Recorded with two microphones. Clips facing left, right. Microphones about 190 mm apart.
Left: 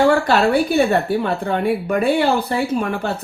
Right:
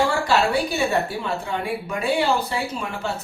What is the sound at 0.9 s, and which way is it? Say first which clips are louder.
A woman's voice: left 6 dB; 55° left (ahead or behind).